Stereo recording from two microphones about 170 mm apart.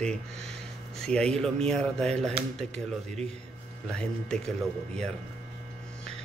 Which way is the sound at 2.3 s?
40° right (ahead or behind).